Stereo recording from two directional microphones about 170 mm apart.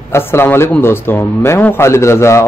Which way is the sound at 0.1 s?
15° left (ahead or behind).